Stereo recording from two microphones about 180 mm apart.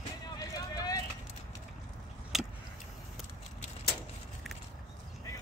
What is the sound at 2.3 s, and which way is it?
Vehicle, centre (ahead or behind).